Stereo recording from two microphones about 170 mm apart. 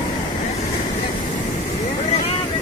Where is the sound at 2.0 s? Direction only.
40° left (ahead or behind).